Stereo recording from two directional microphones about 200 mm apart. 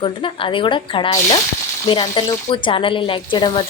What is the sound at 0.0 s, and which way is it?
A woman's voice, 25° left (ahead or behind).